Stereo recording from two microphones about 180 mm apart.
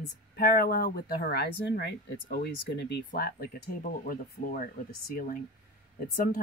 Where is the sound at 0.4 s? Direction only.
55° left (ahead or behind).